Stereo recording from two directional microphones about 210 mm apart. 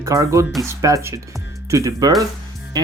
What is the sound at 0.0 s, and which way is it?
Speech, 15° right (ahead or behind).